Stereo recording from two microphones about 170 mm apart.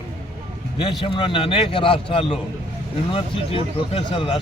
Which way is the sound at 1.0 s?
30° left (ahead or behind).